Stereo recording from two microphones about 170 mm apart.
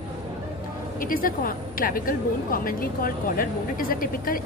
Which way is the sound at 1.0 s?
55° left (ahead or behind).